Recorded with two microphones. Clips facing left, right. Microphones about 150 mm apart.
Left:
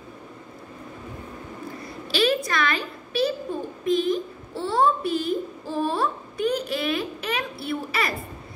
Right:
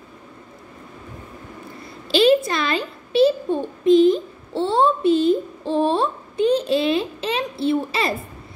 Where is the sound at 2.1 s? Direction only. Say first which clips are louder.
Right 7 dB; 30° right (ahead or behind).